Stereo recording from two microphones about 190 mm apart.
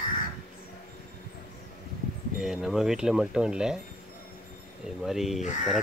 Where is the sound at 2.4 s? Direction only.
Centre (ahead or behind).